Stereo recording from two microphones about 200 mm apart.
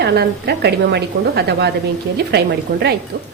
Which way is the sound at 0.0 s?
55° right (ahead or behind).